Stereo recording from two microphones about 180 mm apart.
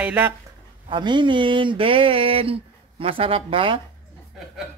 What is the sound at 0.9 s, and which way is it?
Speech, 25° right (ahead or behind).